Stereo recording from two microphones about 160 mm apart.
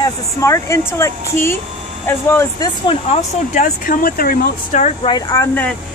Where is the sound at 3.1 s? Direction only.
55° left (ahead or behind).